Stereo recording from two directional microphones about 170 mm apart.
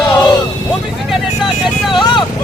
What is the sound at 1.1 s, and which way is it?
Vehicle, centre (ahead or behind).